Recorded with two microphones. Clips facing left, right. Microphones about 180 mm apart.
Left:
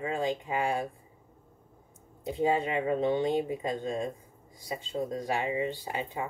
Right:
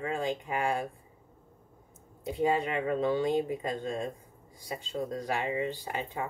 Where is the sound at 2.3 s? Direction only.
25° left (ahead or behind).